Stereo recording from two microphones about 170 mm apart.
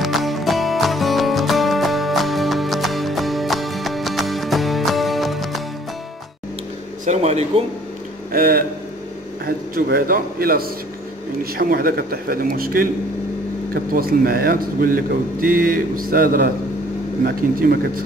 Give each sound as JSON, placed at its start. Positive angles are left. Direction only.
{"t": 0.0, "sound": "music", "side_deg": 0}
{"t": 7.1, "sound": "a sound", "side_deg": -40}
{"t": 8.3, "sound": "speech", "side_deg": -60}
{"t": 9.8, "sound": "speech", "side_deg": -60}
{"t": 13.9, "sound": "speech", "side_deg": -60}